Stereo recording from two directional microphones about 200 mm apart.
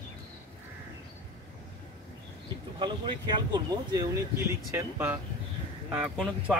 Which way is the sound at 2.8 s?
25° right (ahead or behind).